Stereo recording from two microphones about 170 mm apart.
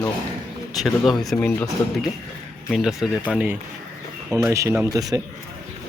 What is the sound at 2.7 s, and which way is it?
Speech, centre (ahead or behind).